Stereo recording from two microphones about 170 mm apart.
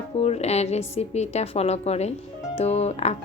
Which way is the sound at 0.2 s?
40° left (ahead or behind).